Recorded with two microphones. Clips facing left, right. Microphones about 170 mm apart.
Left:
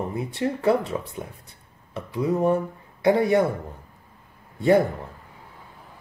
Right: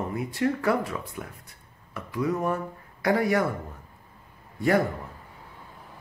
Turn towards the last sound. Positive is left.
turn(degrees=25)  # may be behind; listen again after turning